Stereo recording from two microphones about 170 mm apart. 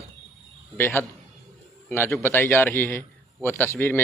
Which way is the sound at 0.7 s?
15° left (ahead or behind).